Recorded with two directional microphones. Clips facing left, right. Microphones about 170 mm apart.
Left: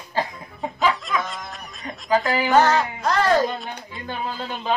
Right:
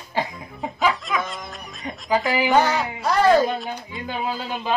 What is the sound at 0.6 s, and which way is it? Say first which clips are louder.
Speech: even; centre (ahead or behind).